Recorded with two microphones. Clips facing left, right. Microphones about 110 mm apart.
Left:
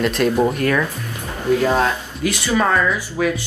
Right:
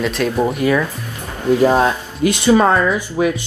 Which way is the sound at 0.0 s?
Centre (ahead or behind).